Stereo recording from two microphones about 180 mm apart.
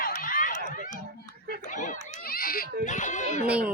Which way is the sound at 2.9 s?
45° left (ahead or behind).